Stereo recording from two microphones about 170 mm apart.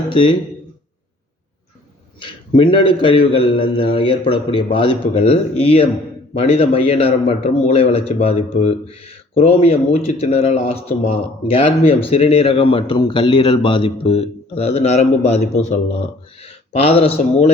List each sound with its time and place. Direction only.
0.1 s a man's voice: 30° left (ahead or behind)
2.1 s a man's voice: 30° left (ahead or behind)